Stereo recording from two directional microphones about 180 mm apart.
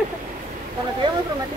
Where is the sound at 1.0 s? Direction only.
25° right (ahead or behind).